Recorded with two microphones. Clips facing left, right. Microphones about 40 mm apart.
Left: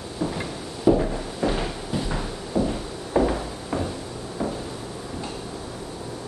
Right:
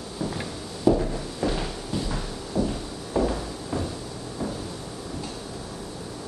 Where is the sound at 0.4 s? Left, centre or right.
Centre.